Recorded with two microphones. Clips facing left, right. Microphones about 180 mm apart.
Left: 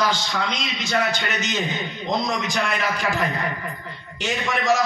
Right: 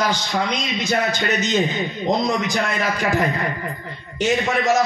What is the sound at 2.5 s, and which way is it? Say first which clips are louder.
Speech: right 2 dB; 40° right (ahead or behind).